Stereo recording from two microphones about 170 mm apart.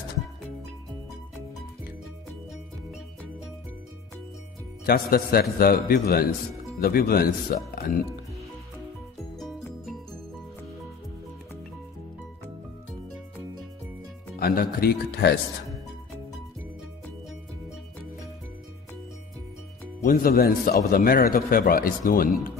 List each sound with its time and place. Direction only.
4.8 s speech: 65° left (ahead or behind)
14.4 s speech: 60° left (ahead or behind)
20.0 s speech: 55° left (ahead or behind)